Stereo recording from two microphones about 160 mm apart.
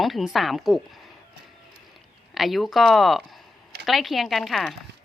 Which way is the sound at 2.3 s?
Centre (ahead or behind).